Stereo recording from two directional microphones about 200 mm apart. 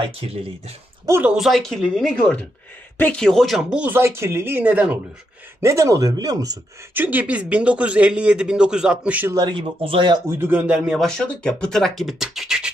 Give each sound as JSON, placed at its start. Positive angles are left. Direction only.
{"t": 0.0, "sound": "speech", "side_deg": -30}
{"t": 1.0, "sound": "speech", "side_deg": -10}